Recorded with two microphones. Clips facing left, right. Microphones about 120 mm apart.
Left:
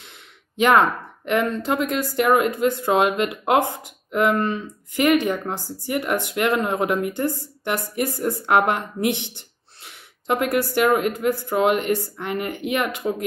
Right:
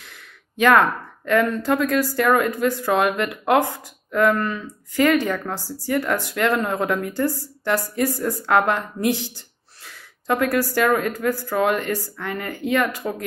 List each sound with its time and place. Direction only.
0.0 s speech: 20° left (ahead or behind)